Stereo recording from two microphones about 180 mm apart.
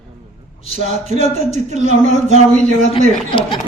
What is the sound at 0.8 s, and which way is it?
Speech, 40° right (ahead or behind).